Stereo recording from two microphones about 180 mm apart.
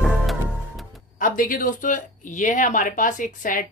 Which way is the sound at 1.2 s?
50° left (ahead or behind).